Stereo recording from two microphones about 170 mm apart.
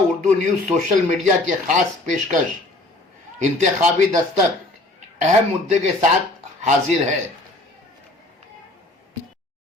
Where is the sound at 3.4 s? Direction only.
45° right (ahead or behind).